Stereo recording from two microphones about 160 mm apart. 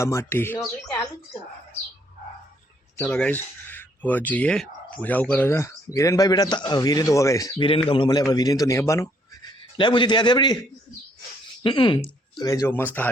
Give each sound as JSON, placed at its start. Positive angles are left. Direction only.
{"t": 0.0, "sound": "speech", "side_deg": 15}
{"t": 3.0, "sound": "speech", "side_deg": 5}
{"t": 7.9, "sound": "a man's voice", "side_deg": 30}
{"t": 11.6, "sound": "speech", "side_deg": 30}